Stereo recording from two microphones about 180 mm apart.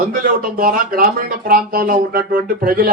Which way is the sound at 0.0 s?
55° right (ahead or behind).